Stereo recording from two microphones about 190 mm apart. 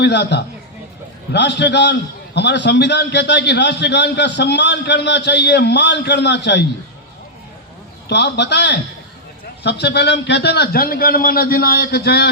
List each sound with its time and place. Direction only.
0.0 s a man's voice: 65° left (ahead or behind)
8.0 s a man's voice: 65° left (ahead or behind)